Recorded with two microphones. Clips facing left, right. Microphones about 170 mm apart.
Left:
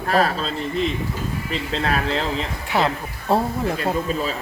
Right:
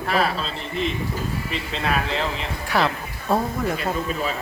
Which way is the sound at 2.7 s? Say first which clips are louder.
Left 1 dB; 20° left (ahead or behind).